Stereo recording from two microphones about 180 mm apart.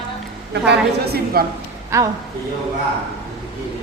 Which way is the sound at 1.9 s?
15° right (ahead or behind).